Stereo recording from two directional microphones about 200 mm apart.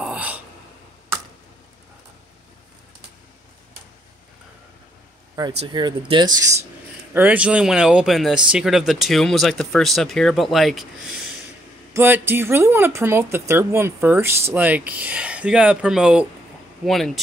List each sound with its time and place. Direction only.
0.0 s a sound: 5° right (ahead or behind)
5.4 s speech: 20° right (ahead or behind)
7.2 s speech: 5° right (ahead or behind)
11.9 s speech: 10° right (ahead or behind)